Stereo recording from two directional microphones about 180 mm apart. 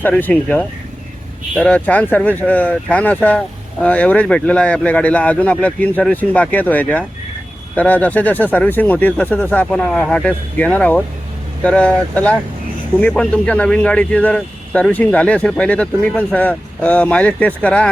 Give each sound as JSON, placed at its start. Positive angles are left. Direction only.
{"t": 0.0, "sound": "speech", "side_deg": 10}